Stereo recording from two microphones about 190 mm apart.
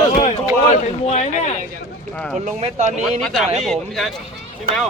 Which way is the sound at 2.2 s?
Centre (ahead or behind).